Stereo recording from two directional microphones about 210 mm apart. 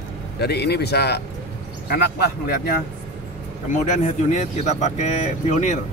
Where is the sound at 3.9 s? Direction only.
35° left (ahead or behind).